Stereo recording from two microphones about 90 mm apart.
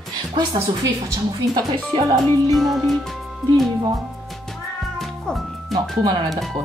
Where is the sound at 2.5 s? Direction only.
Centre (ahead or behind).